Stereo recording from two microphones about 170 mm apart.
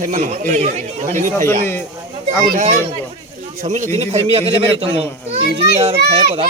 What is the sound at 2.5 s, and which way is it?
A man's voice, 45° right (ahead or behind).